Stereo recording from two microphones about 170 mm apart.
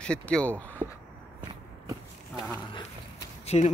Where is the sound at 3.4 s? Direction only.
40° left (ahead or behind).